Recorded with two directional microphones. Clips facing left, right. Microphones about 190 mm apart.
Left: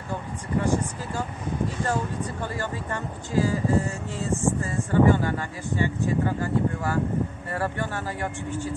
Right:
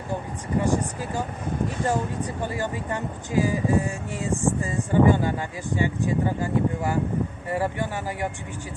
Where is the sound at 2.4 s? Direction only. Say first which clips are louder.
Right 2 dB; 15° right (ahead or behind).